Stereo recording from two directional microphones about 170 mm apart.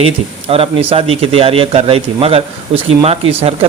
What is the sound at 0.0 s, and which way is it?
Speech, 35° right (ahead or behind).